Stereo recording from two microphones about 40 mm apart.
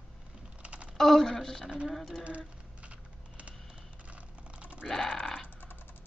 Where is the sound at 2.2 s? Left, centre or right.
Right.